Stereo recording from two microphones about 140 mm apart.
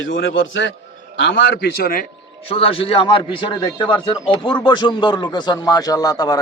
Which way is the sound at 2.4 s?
40° left (ahead or behind).